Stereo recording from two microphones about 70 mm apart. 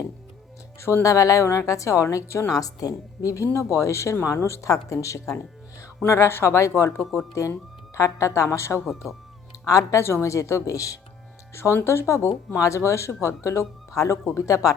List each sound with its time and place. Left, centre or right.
0.8 s speech: left
6.1 s speech: left
6.9 s speech: centre
7.9 s speech: left
8.8 s speech: centre
9.6 s speech: left
10.0 s speech: left
11.5 s speech: left